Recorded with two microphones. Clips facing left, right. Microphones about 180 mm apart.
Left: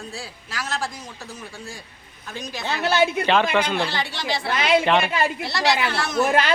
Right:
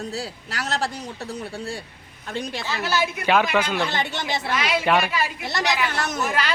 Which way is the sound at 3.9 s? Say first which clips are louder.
Right 2 dB; 20° right (ahead or behind).